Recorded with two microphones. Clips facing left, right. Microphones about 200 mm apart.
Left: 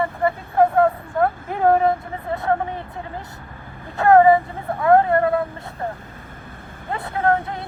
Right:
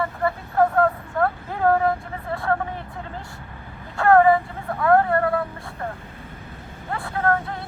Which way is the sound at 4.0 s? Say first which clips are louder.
Left 3 dB; 20° left (ahead or behind).